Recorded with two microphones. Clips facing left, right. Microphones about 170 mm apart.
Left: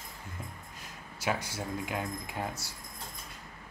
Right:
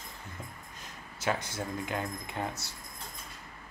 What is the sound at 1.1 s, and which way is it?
Speech, 10° left (ahead or behind).